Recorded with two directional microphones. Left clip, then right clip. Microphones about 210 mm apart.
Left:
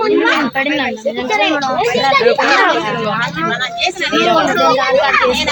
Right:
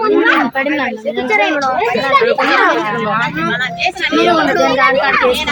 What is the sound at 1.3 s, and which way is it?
Speech, 30° right (ahead or behind).